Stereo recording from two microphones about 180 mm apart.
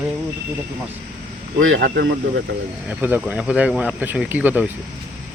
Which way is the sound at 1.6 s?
90° right.